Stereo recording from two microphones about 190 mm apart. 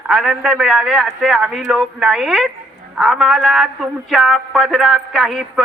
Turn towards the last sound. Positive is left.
turn(degrees=0)  # may be behind; listen again after turning